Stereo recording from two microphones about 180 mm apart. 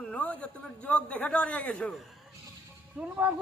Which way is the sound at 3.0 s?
10° right (ahead or behind).